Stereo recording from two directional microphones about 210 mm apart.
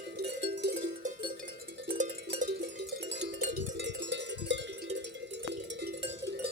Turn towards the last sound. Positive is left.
turn(degrees=-60)  # may be behind; listen again after turning